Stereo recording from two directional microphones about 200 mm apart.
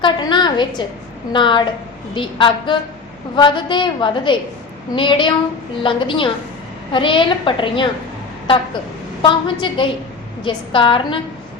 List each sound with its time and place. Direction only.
0.0 s a woman's voice: 25° left (ahead or behind)
9.2 s a woman's voice: 25° left (ahead or behind)